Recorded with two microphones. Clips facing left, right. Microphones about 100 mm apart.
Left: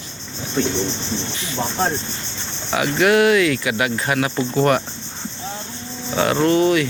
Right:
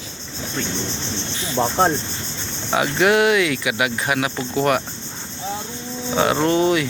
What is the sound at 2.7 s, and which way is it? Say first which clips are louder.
Speech: left 1 dB; 25° right (ahead or behind).